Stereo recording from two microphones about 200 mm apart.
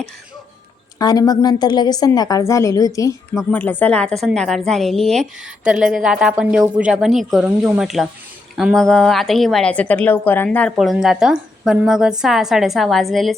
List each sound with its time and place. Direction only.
0.9 s a woman's voice: 20° left (ahead or behind); by 13.3 s centre (ahead or behind)